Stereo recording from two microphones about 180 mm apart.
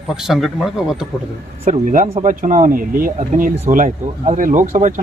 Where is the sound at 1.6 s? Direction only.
50° right (ahead or behind).